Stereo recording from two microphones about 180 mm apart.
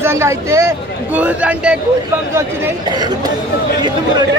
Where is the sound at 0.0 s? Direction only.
15° right (ahead or behind).